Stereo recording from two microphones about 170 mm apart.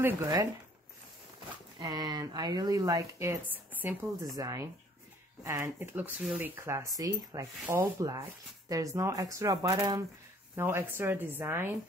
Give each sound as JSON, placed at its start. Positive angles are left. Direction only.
{"t": 0.0, "sound": "speech", "side_deg": -20}
{"t": 1.8, "sound": "speech", "side_deg": -25}
{"t": 4.3, "sound": "speech", "side_deg": -20}